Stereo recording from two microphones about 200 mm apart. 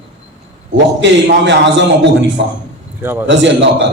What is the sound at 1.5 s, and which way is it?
A man's voice, 60° right (ahead or behind).